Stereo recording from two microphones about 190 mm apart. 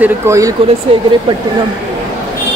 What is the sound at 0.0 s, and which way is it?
Speech, 15° right (ahead or behind).